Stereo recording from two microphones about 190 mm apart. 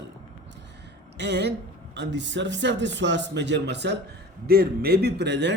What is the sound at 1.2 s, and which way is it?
A man's voice, 60° right (ahead or behind).